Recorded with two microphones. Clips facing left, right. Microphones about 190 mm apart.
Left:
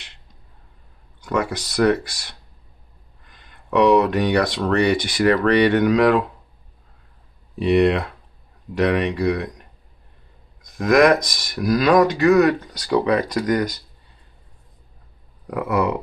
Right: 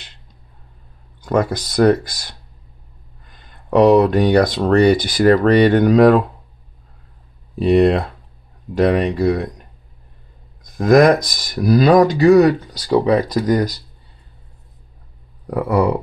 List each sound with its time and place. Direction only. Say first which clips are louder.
1.2 s speech: right 5 dB; 40° right (ahead or behind)
3.7 s speech: right 4 dB; 40° right (ahead or behind)
7.5 s speech: right 3 dB; 35° right (ahead or behind)
10.8 s speech: right 3 dB; 35° right (ahead or behind)
15.5 s speech: right 4 dB; 35° right (ahead or behind)